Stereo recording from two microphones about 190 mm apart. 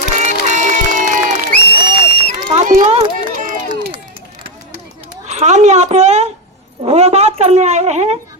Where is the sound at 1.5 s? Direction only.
60° left (ahead or behind).